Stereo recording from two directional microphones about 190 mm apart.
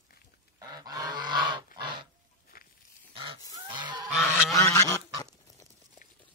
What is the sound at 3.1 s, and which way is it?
Goose, 25° right (ahead or behind).